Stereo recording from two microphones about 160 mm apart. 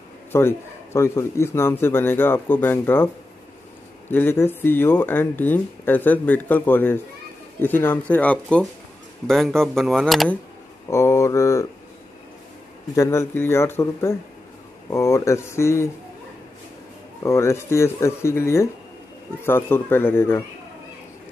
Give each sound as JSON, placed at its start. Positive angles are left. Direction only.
{"t": 0.3, "sound": "speech", "side_deg": 15}
{"t": 4.1, "sound": "speech", "side_deg": 15}
{"t": 10.9, "sound": "speech", "side_deg": 20}
{"t": 12.9, "sound": "speech", "side_deg": 15}
{"t": 17.2, "sound": "speech", "side_deg": 15}